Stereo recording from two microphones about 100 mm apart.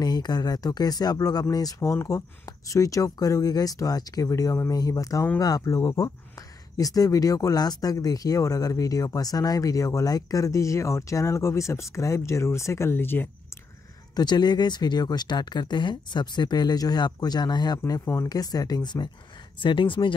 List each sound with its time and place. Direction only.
0.0 s speech: 45° left (ahead or behind); by 13.3 s 20° left (ahead or behind)
14.1 s speech: 45° left (ahead or behind)
18.0 s speech: 30° left (ahead or behind)
19.6 s speech: 55° left (ahead or behind)